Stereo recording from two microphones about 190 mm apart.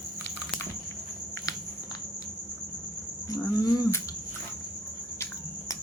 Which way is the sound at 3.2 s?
20° left (ahead or behind).